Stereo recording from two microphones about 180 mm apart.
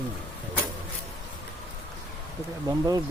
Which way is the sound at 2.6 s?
20° right (ahead or behind).